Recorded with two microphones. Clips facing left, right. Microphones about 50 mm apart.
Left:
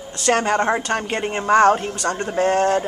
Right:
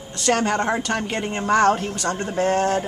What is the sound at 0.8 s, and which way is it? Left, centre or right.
A woman's voice, left.